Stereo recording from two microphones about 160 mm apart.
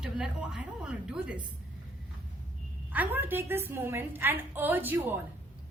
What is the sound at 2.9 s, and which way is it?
A woman's voice, 10° right (ahead or behind).